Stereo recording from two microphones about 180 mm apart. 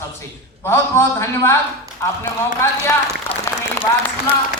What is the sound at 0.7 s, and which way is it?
A woman's voice, 15° left (ahead or behind).